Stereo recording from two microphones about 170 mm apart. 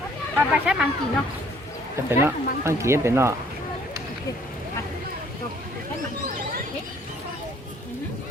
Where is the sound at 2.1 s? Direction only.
15° right (ahead or behind).